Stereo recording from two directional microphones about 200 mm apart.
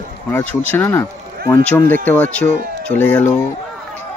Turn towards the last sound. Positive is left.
turn(degrees=10)  # may be behind; listen again after turning